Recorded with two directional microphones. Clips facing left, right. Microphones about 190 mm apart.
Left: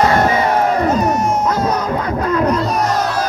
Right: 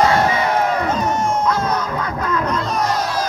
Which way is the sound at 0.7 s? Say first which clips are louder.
Left 4 dB; 40° left (ahead or behind).